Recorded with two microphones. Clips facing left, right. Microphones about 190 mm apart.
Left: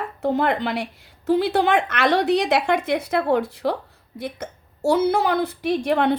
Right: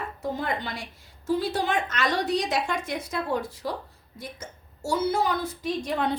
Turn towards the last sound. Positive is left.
turn(degrees=65)  # may be behind; listen again after turning